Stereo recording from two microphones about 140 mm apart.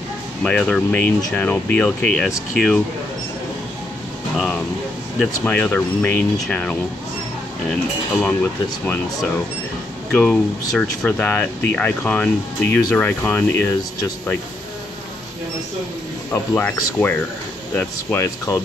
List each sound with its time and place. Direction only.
0.4 s speech: 5° left (ahead or behind)
5.2 s speech: 10° left (ahead or behind)
10.1 s speech: 10° left (ahead or behind)
16.3 s speech: 15° left (ahead or behind)